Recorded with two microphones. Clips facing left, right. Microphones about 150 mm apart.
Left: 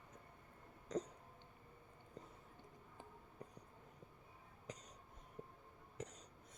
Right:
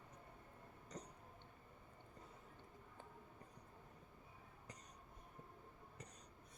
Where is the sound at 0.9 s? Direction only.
90° left.